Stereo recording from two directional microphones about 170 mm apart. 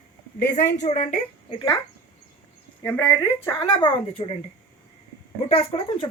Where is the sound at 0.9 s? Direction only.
50° left (ahead or behind).